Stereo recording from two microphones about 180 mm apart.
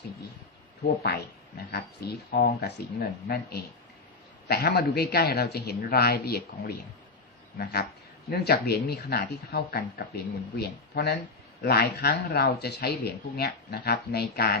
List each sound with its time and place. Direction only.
1.0 s speech: 65° left (ahead or behind)